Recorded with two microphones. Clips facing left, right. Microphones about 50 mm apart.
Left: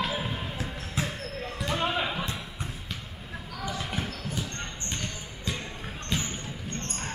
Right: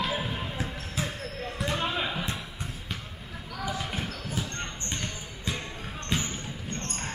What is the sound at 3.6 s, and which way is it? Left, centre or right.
Basketball bounce, centre.